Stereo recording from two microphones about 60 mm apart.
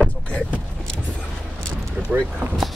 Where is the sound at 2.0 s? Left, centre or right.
Right.